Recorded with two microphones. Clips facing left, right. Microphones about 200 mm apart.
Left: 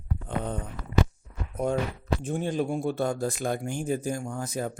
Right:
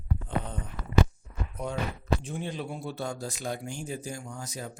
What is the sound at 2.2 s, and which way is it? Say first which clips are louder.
Speech: left 7 dB; 45° left (ahead or behind).